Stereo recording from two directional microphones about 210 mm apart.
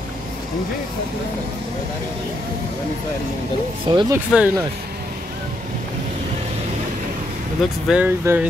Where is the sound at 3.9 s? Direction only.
20° right (ahead or behind).